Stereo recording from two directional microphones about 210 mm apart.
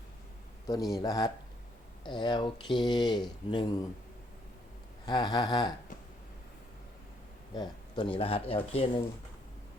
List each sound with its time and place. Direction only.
0.7 s speech: 15° left (ahead or behind)
5.0 s speech: 20° left (ahead or behind)
7.5 s speech: 20° left (ahead or behind)